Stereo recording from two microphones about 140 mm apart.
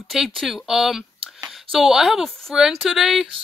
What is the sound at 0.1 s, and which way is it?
Speech, centre (ahead or behind).